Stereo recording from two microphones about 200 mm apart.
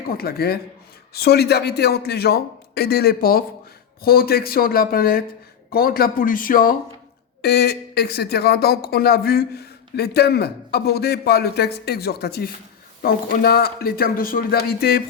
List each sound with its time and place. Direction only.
0.1 s speech: 50° left (ahead or behind)